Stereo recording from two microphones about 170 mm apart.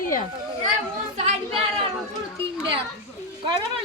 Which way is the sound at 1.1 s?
40° right (ahead or behind).